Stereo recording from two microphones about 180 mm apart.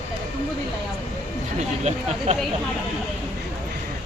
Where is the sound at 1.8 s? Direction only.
35° right (ahead or behind).